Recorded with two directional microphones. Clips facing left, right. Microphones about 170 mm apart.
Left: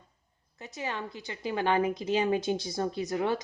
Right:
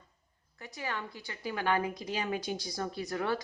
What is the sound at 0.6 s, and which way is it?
A woman's voice, 20° left (ahead or behind).